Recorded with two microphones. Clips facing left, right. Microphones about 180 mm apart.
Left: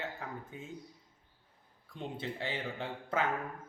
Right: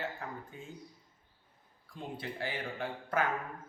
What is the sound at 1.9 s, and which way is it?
A man's voice, 25° left (ahead or behind).